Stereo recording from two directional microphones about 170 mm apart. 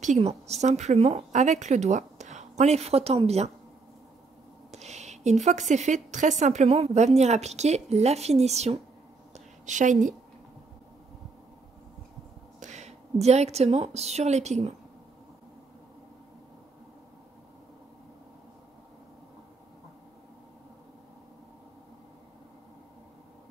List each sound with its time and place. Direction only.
0.0 s a woman's voice: 40° right (ahead or behind)
4.6 s a woman's voice: 40° right (ahead or behind)
9.3 s a sound: 45° right (ahead or behind)
12.5 s a woman's voice: 45° right (ahead or behind)